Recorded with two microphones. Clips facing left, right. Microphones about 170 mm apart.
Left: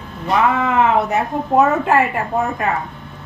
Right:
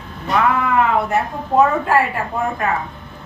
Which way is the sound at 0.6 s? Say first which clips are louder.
Left 1 dB; 20° left (ahead or behind).